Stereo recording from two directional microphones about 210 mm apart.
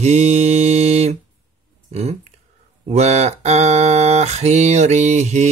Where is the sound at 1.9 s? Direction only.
30° right (ahead or behind).